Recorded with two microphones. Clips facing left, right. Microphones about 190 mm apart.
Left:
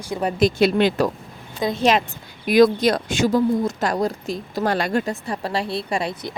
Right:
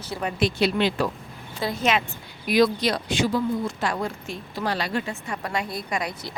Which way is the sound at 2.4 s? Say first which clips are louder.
Left 6 dB; 50° left (ahead or behind).